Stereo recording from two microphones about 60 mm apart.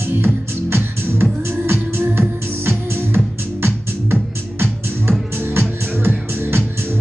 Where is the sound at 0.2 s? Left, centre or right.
Right.